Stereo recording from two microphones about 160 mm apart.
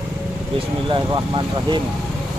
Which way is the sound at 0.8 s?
30° right (ahead or behind).